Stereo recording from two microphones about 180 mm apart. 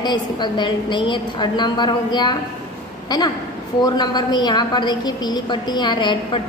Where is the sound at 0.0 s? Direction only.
25° left (ahead or behind).